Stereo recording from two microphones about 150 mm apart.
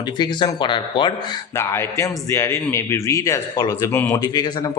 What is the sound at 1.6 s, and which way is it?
A man's voice, 15° left (ahead or behind).